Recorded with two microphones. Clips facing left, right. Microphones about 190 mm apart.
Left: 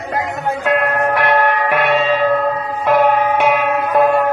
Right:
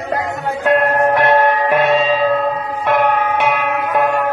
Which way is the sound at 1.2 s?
25° right (ahead or behind).